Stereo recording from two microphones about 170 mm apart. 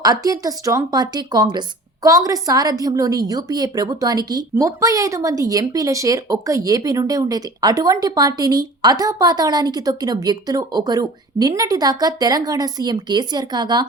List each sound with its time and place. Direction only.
0.0 s a woman's voice: 20° right (ahead or behind)